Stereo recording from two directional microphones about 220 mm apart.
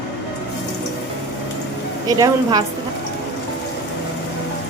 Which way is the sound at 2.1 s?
15° right (ahead or behind).